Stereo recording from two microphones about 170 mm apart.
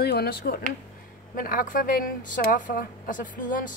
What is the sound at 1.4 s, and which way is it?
Speech, 55° left (ahead or behind).